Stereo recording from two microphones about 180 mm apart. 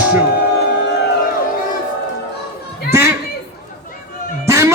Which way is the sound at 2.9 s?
15° right (ahead or behind).